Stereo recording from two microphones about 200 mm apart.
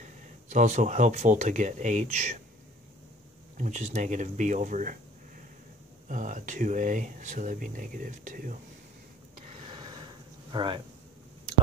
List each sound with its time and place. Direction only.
0.0 s speech: 35° right (ahead or behind)
3.5 s speech: 40° right (ahead or behind)
6.0 s speech: 40° right (ahead or behind)
9.5 s a sound: 25° right (ahead or behind)
10.5 s speech: 25° right (ahead or behind)